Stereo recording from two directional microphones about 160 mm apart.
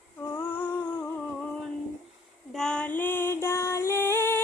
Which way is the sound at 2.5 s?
5° left (ahead or behind).